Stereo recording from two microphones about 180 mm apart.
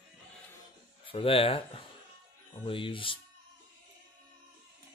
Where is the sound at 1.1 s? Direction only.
30° left (ahead or behind).